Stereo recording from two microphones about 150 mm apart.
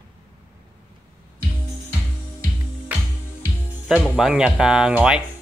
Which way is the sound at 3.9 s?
5° right (ahead or behind).